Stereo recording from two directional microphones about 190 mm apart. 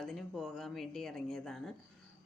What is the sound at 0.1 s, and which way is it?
A woman's voice, centre (ahead or behind).